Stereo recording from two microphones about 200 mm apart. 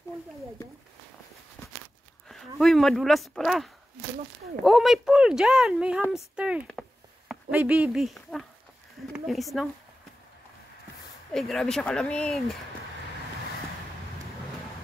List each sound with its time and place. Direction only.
2.6 s speech: centre (ahead or behind)
6.7 s a sound: centre (ahead or behind)
7.5 s speech: 5° right (ahead or behind)
11.3 s speech: centre (ahead or behind)